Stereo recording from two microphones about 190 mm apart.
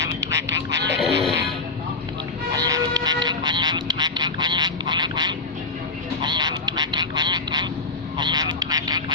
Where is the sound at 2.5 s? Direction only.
20° right (ahead or behind).